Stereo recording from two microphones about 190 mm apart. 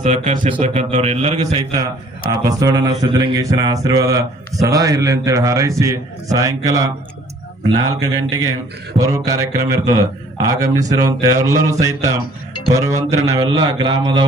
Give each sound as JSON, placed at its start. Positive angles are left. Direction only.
{"t": 0.0, "sound": "a man's voice", "side_deg": -35}
{"t": 2.4, "sound": "mantra", "side_deg": -20}
{"t": 4.6, "sound": "speech", "side_deg": -15}
{"t": 7.7, "sound": "mantra", "side_deg": -20}
{"t": 9.0, "sound": "speech", "side_deg": -15}
{"t": 13.3, "sound": "mantra", "side_deg": -20}